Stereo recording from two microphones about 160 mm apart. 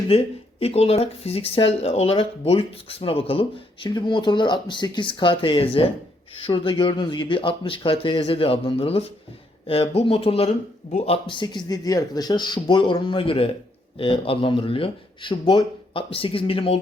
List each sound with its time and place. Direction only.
0.1 s speech: 40° left (ahead or behind)
10.1 s speech: 35° left (ahead or behind)